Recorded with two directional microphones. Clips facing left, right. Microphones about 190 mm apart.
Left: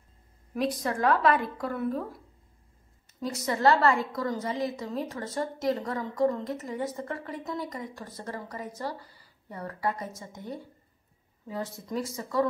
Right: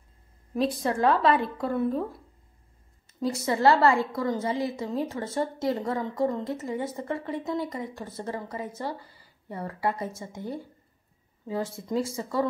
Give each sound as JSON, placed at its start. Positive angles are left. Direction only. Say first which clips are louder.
{"t": 0.6, "sound": "a woman's voice", "louder": "right 3 dB", "side_deg": -30}
{"t": 3.2, "sound": "a woman's voice", "louder": "right 3 dB", "side_deg": -30}